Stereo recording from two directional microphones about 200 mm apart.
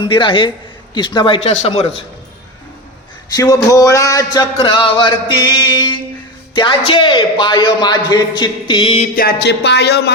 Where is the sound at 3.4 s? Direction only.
15° left (ahead or behind).